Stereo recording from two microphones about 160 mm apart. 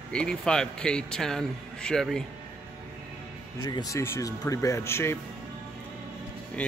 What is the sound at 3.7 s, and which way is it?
Speech, 25° left (ahead or behind).